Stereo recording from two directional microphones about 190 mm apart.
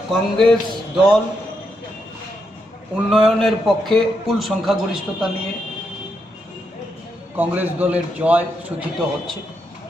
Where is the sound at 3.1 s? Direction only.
Centre (ahead or behind).